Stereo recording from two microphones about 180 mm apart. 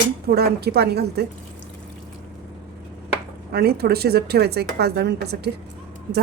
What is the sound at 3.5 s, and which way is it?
Speech, 60° right (ahead or behind).